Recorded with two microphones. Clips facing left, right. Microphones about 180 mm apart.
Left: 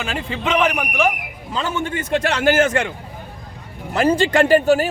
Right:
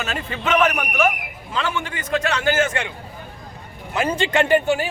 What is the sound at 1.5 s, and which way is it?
Speech, 40° left (ahead or behind).